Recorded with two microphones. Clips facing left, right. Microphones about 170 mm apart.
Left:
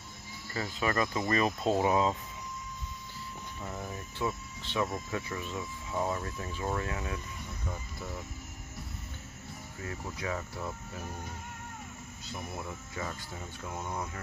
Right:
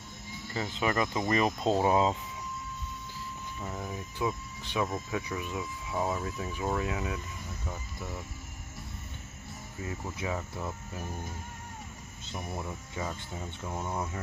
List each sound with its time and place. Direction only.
0.5 s speech: 20° right (ahead or behind)
4.2 s speech: 15° right (ahead or behind)
5.9 s speech: 5° right (ahead or behind)
9.8 s speech: 15° right (ahead or behind)